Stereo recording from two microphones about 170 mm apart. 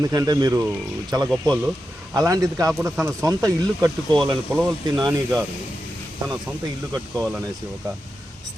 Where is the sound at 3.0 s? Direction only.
15° right (ahead or behind).